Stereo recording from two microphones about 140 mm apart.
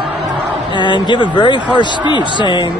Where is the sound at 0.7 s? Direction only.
35° left (ahead or behind).